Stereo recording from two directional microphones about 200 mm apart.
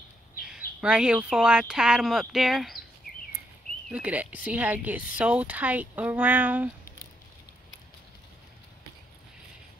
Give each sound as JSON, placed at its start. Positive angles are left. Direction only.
{"t": 0.7, "sound": "speech", "side_deg": -5}
{"t": 3.1, "sound": "a sound", "side_deg": 45}
{"t": 3.9, "sound": "speech", "side_deg": -5}